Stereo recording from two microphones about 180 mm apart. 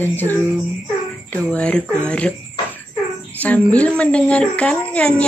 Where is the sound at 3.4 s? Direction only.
10° left (ahead or behind).